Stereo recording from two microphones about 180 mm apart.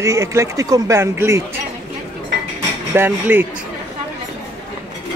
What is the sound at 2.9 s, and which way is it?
Speech, 10° right (ahead or behind).